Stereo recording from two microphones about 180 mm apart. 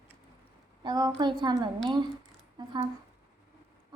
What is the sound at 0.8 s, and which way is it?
A woman's voice, 25° right (ahead or behind).